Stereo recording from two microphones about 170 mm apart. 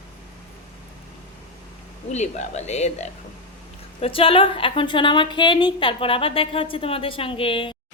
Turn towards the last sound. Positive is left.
turn(degrees=30)  # may be behind; listen again after turning